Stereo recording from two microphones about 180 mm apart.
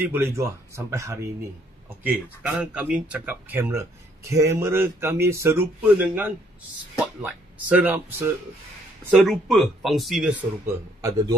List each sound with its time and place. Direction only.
0.0 s speech: 15° right (ahead or behind)
11.0 s a man's voice: 20° right (ahead or behind)